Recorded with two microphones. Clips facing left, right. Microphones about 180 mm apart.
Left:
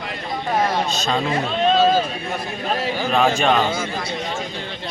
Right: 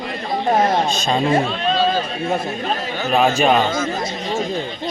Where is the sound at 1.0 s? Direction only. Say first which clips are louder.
Right 6 dB; 25° right (ahead or behind).